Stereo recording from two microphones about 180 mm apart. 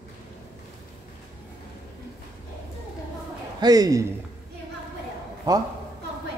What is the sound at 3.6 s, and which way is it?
Speech, 20° right (ahead or behind).